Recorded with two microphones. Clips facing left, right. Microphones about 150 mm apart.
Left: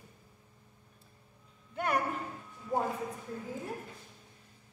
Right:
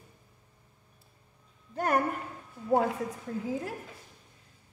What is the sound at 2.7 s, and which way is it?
Speech, 75° right (ahead or behind).